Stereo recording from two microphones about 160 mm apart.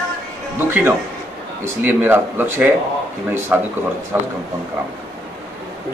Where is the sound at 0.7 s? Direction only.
15° right (ahead or behind).